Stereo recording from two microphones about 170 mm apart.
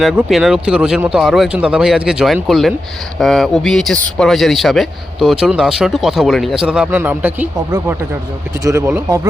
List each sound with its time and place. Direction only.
0.0 s a man's voice: centre (ahead or behind); by 9.2 s 15° right (ahead or behind)